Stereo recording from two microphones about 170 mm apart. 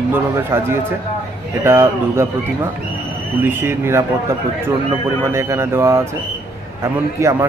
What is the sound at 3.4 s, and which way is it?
Speech, 10° right (ahead or behind).